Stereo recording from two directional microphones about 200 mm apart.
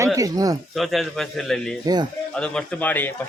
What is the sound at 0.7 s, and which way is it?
A man's voice, centre (ahead or behind).